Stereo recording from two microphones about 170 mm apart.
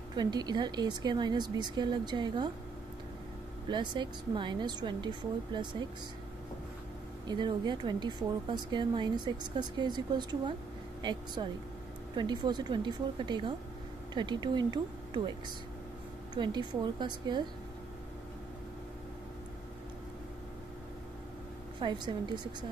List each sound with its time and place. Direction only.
0.1 s speech: 25° right (ahead or behind)
3.7 s speech: 25° right (ahead or behind)
7.2 s speech: 25° right (ahead or behind)
16.3 s speech: 25° right (ahead or behind)
21.7 s speech: 25° right (ahead or behind)